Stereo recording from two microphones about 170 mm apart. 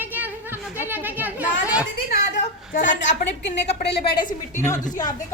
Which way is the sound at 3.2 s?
85° left.